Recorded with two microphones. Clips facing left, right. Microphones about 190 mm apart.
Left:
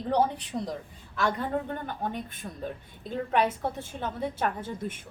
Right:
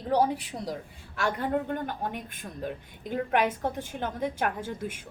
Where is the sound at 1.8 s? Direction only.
10° right (ahead or behind).